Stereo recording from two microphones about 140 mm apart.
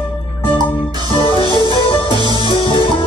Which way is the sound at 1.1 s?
40° left (ahead or behind).